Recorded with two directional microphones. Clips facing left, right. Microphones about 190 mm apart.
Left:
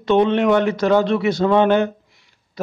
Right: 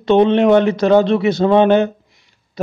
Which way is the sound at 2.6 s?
25° right (ahead or behind).